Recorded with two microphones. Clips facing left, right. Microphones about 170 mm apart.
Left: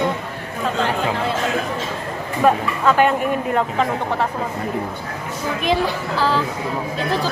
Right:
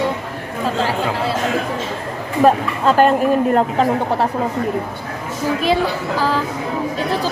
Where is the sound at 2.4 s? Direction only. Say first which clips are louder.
Right 3 dB; 35° right (ahead or behind).